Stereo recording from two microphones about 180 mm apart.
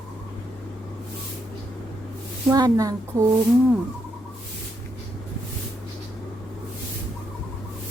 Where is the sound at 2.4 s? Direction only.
20° right (ahead or behind).